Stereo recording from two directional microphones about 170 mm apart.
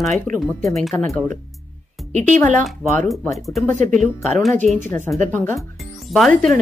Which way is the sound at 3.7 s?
50° right (ahead or behind).